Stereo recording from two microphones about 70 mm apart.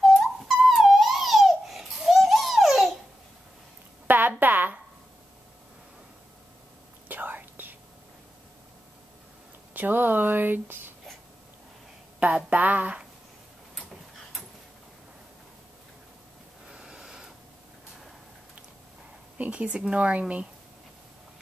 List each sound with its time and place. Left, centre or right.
0.0 s a sound: centre
4.1 s a sound: right
7.1 s whispering: right
9.8 s speech: right
12.4 s speech: right
16.6 s snort: centre
19.3 s speech: centre